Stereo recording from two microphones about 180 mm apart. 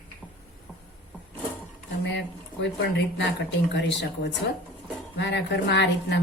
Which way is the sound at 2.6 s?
75° left (ahead or behind).